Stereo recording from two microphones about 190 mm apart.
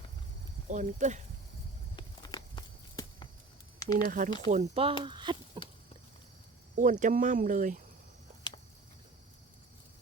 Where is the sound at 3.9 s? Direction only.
45° right (ahead or behind); by 5.4 s 25° right (ahead or behind).